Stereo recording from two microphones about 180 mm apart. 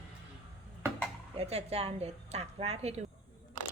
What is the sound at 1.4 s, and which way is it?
A woman's voice, 35° right (ahead or behind).